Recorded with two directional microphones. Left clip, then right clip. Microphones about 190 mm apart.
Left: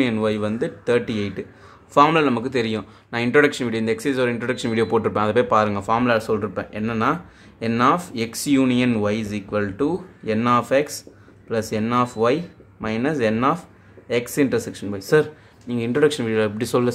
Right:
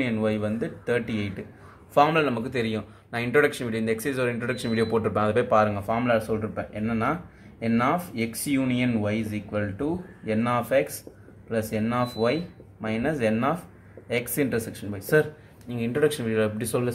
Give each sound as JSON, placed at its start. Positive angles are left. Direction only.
{"t": 0.0, "sound": "speech", "side_deg": 30}